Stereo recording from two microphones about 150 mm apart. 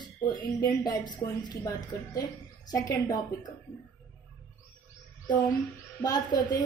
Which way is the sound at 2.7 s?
25° left (ahead or behind).